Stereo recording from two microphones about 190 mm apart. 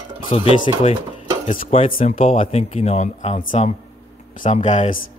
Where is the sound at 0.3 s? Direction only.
30° left (ahead or behind).